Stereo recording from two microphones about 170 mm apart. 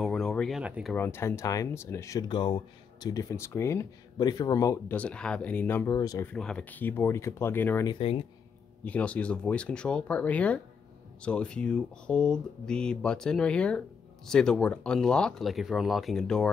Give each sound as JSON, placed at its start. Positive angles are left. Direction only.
{"t": 0.0, "sound": "a sound", "side_deg": 0}
{"t": 0.9, "sound": "speech", "side_deg": 15}
{"t": 4.9, "sound": "speech", "side_deg": 5}
{"t": 6.2, "sound": "speech", "side_deg": 5}
{"t": 7.8, "sound": "speech", "side_deg": 30}
{"t": 8.8, "sound": "speech", "side_deg": 5}